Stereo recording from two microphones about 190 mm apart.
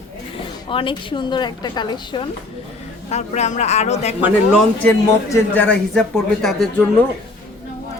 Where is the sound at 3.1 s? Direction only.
35° left (ahead or behind).